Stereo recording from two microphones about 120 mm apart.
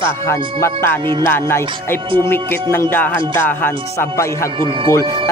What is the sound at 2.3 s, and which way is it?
Music, 20° left (ahead or behind).